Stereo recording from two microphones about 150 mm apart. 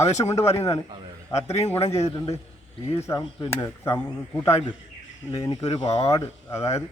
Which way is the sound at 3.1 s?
20° left (ahead or behind).